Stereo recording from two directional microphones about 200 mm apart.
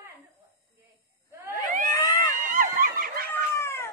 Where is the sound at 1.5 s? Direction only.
40° right (ahead or behind).